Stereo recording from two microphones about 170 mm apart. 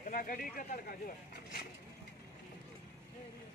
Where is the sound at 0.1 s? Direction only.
50° left (ahead or behind).